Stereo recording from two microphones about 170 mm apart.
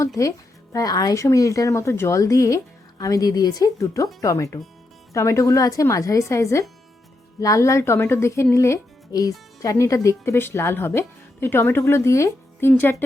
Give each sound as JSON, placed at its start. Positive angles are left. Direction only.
{"t": 0.2, "sound": "speech", "side_deg": 20}